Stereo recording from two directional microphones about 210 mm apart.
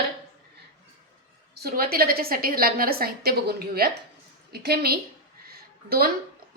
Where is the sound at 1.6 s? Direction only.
45° right (ahead or behind).